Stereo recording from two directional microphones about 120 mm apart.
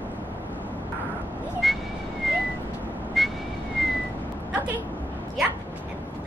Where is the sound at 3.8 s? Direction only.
Centre (ahead or behind).